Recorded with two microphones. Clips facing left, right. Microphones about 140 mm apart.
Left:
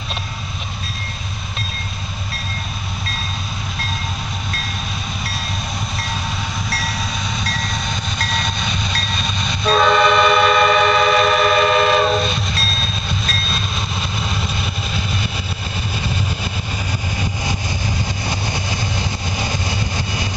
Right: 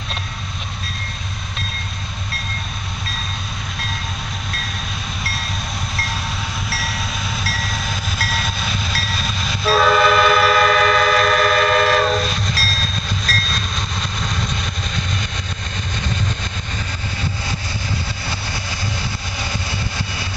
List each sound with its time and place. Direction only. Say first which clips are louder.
6.7 s train: left 2 dB; centre (ahead or behind)
18.3 s vehicle: left 4 dB; 20° left (ahead or behind)